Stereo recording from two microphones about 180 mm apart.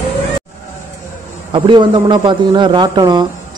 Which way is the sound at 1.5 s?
25° right (ahead or behind).